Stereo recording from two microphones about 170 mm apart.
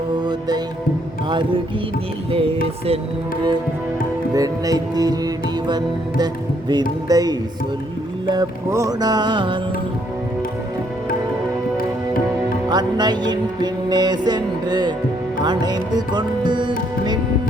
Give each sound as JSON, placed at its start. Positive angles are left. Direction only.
{"t": 0.2, "sound": "music", "side_deg": -25}
{"t": 4.4, "sound": "music", "side_deg": -20}
{"t": 12.6, "sound": "music", "side_deg": -25}